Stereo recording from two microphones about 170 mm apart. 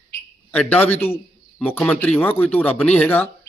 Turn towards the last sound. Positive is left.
turn(degrees=10)  # may be behind; listen again after turning